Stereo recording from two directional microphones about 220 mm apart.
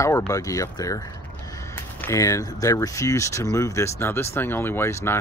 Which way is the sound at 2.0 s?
15° left (ahead or behind).